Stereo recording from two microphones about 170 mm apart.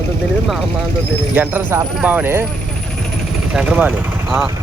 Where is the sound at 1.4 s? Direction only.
15° right (ahead or behind).